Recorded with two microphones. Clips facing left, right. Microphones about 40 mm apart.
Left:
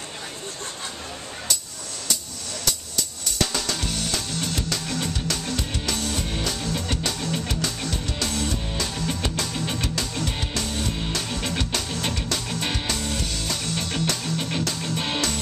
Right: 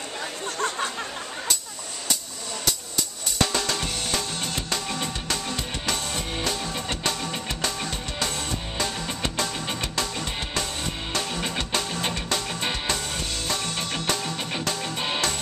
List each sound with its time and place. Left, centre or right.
3.3 s drum kit: centre
5.9 s music: right